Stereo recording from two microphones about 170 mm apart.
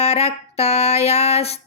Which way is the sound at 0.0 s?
40° left (ahead or behind).